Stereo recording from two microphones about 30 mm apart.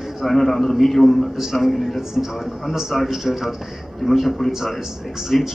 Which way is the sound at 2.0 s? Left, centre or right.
Centre.